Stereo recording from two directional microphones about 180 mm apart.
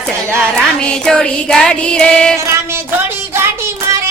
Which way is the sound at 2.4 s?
15° right (ahead or behind).